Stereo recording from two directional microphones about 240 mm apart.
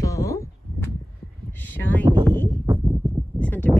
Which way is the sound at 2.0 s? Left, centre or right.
Centre.